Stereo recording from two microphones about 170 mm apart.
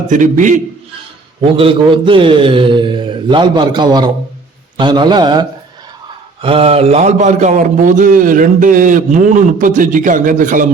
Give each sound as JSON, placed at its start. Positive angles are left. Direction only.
{"t": 0.1, "sound": "a man's voice", "side_deg": -50}
{"t": 1.5, "sound": "a man's voice", "side_deg": -30}